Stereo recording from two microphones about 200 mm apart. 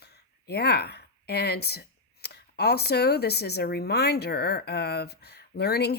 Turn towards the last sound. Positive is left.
turn(degrees=55)  # may be behind; listen again after turning